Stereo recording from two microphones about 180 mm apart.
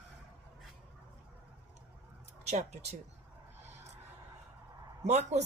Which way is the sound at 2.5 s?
35° right (ahead or behind).